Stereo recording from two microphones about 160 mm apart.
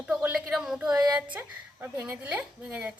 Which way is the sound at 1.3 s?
10° right (ahead or behind).